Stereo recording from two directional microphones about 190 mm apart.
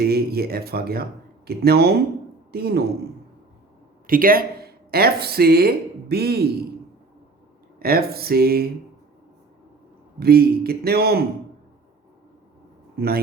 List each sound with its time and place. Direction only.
0.0 s a man's voice: 55° right (ahead or behind)
4.0 s speech: 50° right (ahead or behind)
7.8 s a sound: 55° right (ahead or behind)
10.2 s a man's voice: 55° right (ahead or behind)